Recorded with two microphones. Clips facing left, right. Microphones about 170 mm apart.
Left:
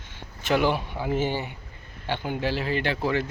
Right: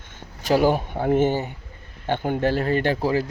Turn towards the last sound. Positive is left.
turn(degrees=-35)  # may be behind; listen again after turning